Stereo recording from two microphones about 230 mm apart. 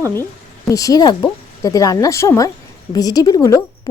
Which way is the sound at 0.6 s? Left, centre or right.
Centre.